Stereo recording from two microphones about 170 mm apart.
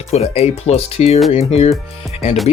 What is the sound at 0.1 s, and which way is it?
Speech, 40° left (ahead or behind).